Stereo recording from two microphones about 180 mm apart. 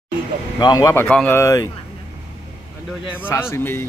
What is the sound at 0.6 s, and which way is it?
Speech, 25° left (ahead or behind).